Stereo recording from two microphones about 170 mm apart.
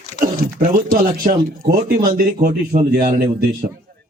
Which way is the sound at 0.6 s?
55° right (ahead or behind).